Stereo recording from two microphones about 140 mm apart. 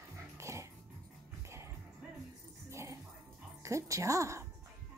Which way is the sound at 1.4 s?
20° right (ahead or behind).